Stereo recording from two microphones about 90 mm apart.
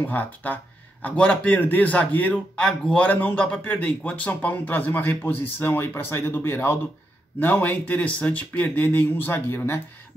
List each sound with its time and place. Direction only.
0.0 s a man's voice: 20° left (ahead or behind)